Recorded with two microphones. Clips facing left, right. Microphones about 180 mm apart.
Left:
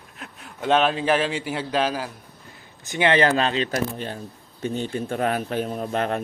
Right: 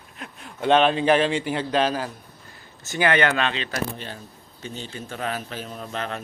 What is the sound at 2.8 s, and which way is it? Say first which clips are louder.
Speech: left 2 dB; 20° left (ahead or behind).